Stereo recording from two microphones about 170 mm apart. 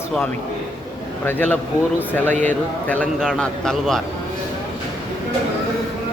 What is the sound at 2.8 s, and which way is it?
A man's voice, 10° left (ahead or behind).